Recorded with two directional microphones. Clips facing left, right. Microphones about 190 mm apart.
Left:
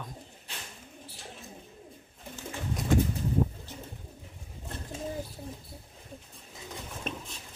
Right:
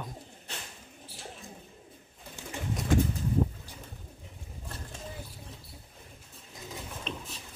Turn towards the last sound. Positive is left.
turn(degrees=50)  # may be behind; listen again after turning